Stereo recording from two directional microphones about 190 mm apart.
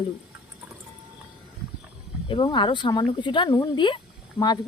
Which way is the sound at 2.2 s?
25° left (ahead or behind).